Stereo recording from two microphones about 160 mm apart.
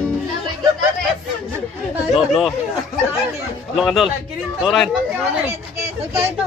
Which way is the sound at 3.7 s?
Centre (ahead or behind).